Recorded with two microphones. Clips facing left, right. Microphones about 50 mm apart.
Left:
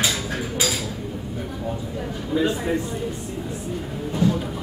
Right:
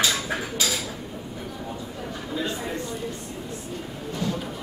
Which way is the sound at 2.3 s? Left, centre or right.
Centre.